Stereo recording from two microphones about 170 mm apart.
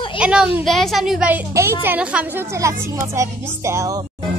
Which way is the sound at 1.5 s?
15° right (ahead or behind).